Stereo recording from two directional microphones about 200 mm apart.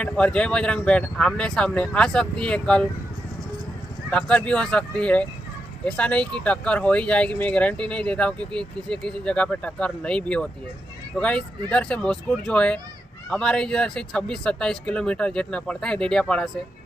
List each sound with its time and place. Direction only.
0.0 s speech: 5° left (ahead or behind)
4.1 s speech: 5° left (ahead or behind)